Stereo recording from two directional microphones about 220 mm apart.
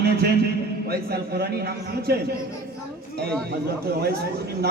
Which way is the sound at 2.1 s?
45° right (ahead or behind).